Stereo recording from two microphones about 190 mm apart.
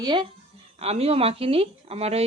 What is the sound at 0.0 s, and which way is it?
Speech, 25° right (ahead or behind).